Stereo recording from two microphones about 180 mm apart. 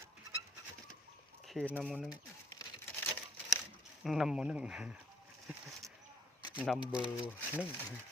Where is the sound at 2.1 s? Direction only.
20° left (ahead or behind).